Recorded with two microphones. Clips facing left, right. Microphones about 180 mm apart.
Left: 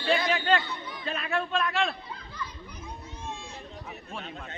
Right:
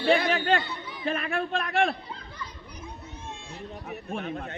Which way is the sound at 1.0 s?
50° right (ahead or behind).